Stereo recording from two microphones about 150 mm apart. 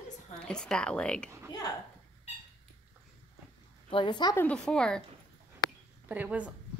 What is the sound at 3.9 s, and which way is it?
Speech, 30° left (ahead or behind).